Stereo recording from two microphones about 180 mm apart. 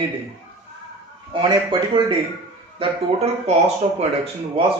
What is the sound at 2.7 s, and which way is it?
Speech, 35° right (ahead or behind).